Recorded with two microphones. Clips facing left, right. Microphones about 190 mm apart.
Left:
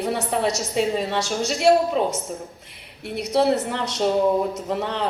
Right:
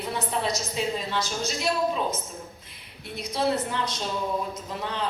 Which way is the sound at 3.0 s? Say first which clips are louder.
Left 7 dB; 65° left (ahead or behind).